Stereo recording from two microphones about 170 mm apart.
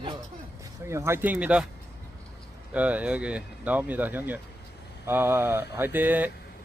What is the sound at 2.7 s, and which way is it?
Speech, 10° right (ahead or behind).